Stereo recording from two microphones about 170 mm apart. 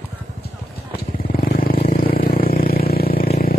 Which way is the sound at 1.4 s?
60° left (ahead or behind).